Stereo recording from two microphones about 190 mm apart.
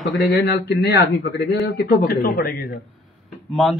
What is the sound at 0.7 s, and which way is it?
Speech, 60° left (ahead or behind).